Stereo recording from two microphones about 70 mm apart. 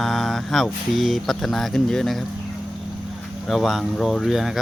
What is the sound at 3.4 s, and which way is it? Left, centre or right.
Mantra, centre.